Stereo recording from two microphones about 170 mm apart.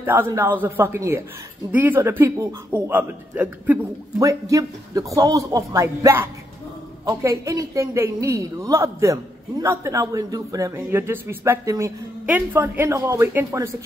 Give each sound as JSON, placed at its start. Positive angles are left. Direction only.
{"t": 0.0, "sound": "a woman's voice", "side_deg": -10}
{"t": 4.2, "sound": "a man's voice", "side_deg": -20}